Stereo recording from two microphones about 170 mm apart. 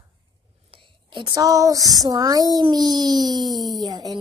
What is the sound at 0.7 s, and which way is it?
A woman's voice, 30° right (ahead or behind).